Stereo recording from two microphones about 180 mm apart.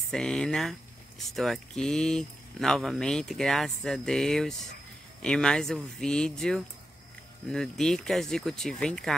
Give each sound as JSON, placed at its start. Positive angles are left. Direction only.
{"t": 0.1, "sound": "speech", "side_deg": 5}